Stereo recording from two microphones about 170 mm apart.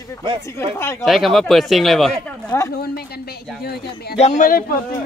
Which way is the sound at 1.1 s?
Centre (ahead or behind).